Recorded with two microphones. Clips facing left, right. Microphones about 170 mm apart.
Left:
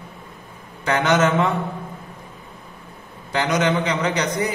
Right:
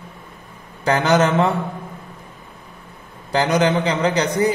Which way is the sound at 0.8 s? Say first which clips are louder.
Right 2 dB; 35° right (ahead or behind).